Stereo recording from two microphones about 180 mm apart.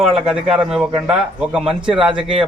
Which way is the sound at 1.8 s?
25° right (ahead or behind).